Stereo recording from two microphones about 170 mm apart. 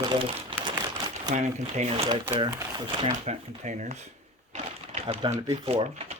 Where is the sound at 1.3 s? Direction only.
45° right (ahead or behind).